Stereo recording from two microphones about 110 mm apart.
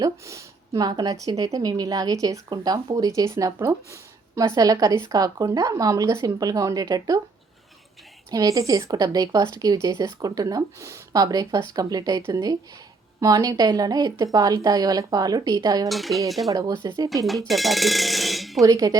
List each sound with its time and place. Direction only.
0.0 s a woman's voice: 30° right (ahead or behind)
8.3 s speech: 35° right (ahead or behind)
15.9 s cutlery: centre (ahead or behind)
16.5 s speech: 35° right (ahead or behind)
17.2 s speech: centre (ahead or behind)
18.6 s speech: 30° right (ahead or behind)